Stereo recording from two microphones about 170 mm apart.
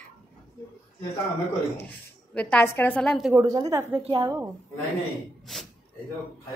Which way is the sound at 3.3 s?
20° right (ahead or behind).